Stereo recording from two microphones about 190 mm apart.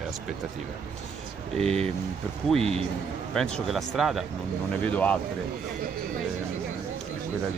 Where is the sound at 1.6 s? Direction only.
35° right (ahead or behind).